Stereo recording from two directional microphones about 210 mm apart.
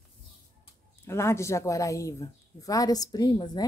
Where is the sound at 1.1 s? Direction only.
15° left (ahead or behind).